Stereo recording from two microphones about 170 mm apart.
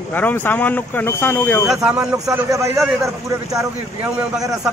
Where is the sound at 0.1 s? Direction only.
10° left (ahead or behind).